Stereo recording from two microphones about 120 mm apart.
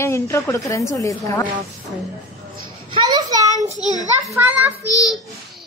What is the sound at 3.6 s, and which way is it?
Speech, 70° right (ahead or behind).